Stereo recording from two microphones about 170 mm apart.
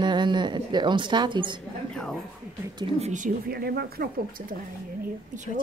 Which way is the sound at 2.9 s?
45° right (ahead or behind).